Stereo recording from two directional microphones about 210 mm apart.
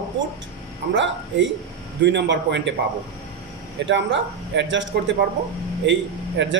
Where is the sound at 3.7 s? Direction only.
60° right (ahead or behind).